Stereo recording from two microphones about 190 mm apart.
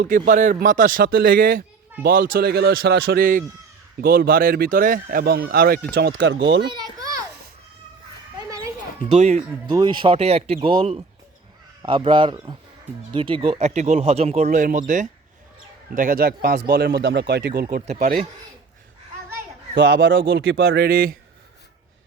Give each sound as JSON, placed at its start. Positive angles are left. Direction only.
{"t": 0.3, "sound": "speech", "side_deg": -45}
{"t": 6.1, "sound": "speech", "side_deg": -75}
{"t": 6.7, "sound": "children playing", "side_deg": -20}
{"t": 8.4, "sound": "a sound", "side_deg": -15}
{"t": 9.0, "sound": "speech", "side_deg": -35}
{"t": 9.6, "sound": "a man's voice", "side_deg": -20}
{"t": 19.7, "sound": "speech", "side_deg": -70}
{"t": 20.2, "sound": "speech", "side_deg": -55}